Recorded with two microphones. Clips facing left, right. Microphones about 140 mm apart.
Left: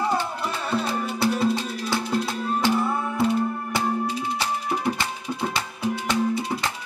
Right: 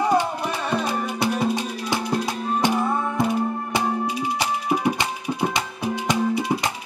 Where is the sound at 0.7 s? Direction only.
15° right (ahead or behind).